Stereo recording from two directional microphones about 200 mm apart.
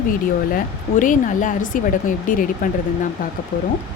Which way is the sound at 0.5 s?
40° left (ahead or behind).